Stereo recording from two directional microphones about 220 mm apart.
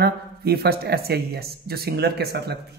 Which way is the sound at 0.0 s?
45° right (ahead or behind).